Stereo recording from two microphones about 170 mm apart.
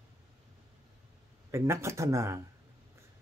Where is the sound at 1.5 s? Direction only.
15° right (ahead or behind).